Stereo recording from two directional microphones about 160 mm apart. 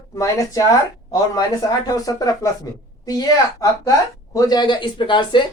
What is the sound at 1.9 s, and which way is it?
Speech, 20° left (ahead or behind).